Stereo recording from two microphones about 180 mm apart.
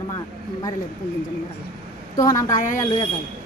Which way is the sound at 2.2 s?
20° left (ahead or behind).